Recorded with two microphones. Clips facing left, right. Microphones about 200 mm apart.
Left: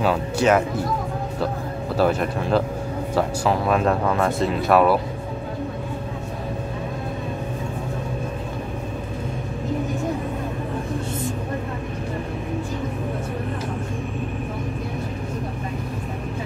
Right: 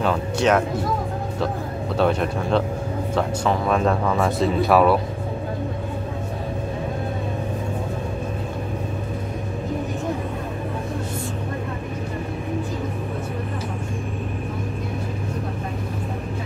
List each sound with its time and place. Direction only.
0.0 s speech: 5° left (ahead or behind)
2.0 s speech: 5° left (ahead or behind)